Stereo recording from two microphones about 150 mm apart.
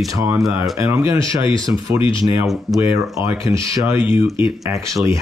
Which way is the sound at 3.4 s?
20° right (ahead or behind).